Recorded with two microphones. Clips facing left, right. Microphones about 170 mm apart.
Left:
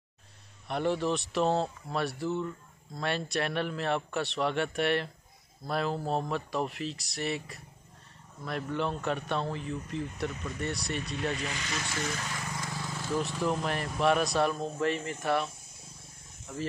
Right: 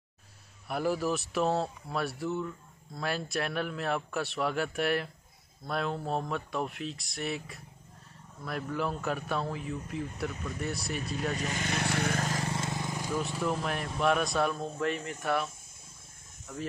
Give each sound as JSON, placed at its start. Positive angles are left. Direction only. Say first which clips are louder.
{"t": 0.7, "sound": "speech", "louder": "left 1 dB", "side_deg": -5}
{"t": 11.3, "sound": "speech", "louder": "right 3 dB", "side_deg": -45}
{"t": 12.3, "sound": "vehicle", "louder": "right 5 dB", "side_deg": -35}
{"t": 13.1, "sound": "speech", "louder": "left 2 dB", "side_deg": 0}